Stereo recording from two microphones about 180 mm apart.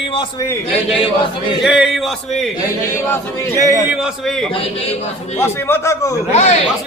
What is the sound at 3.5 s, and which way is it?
Speech, 20° right (ahead or behind).